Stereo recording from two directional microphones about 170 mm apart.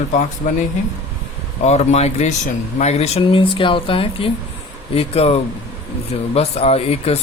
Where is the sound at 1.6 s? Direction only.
40° left (ahead or behind).